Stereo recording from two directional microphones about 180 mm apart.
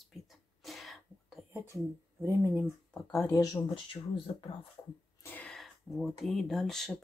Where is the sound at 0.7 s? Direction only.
Centre (ahead or behind).